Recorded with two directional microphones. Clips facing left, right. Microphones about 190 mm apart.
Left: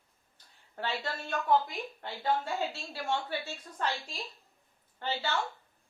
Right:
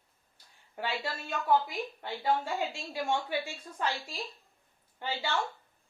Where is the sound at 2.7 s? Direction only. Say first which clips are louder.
Right 2 dB; 15° right (ahead or behind).